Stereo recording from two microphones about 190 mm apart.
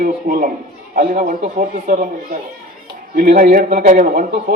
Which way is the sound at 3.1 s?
55° right (ahead or behind).